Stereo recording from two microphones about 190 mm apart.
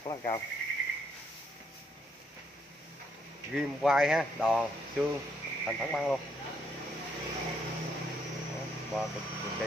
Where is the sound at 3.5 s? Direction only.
5° right (ahead or behind).